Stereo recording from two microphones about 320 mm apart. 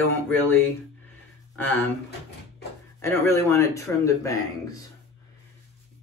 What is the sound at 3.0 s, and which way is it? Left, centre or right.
Speech, centre.